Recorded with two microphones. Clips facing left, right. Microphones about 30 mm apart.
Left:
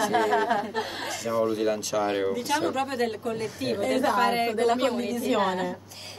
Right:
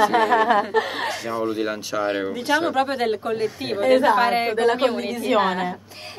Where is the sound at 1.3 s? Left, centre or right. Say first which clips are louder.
Left 3 dB; right.